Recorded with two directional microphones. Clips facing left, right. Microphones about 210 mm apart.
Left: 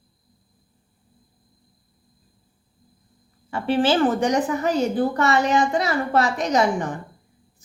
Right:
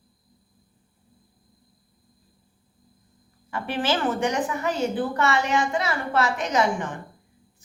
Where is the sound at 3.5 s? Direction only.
30° left (ahead or behind).